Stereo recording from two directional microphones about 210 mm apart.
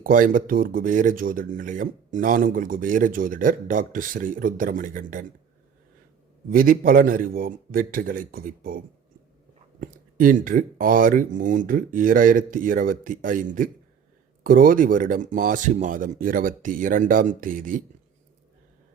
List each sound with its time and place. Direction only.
0.0 s speech: 40° right (ahead or behind)
6.5 s a man's voice: 40° right (ahead or behind)
9.8 s speech: 40° right (ahead or behind)